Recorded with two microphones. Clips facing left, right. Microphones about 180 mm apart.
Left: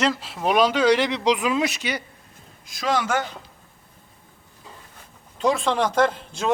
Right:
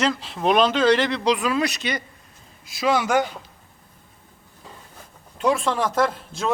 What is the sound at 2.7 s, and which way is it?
Speech, 10° right (ahead or behind).